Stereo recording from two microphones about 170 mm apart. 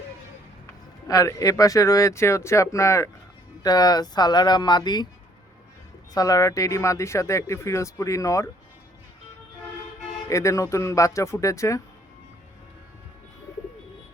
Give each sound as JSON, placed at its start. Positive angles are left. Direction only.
{"t": 1.0, "sound": "speech", "side_deg": 20}
{"t": 6.1, "sound": "speech", "side_deg": 20}
{"t": 10.2, "sound": "speech", "side_deg": 20}